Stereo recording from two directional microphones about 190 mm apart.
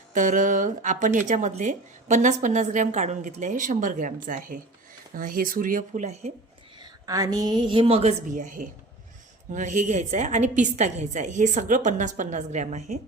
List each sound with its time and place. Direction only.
0.1 s speech: 40° right (ahead or behind)
7.0 s a woman's voice: 20° right (ahead or behind); by 13.0 s 35° right (ahead or behind)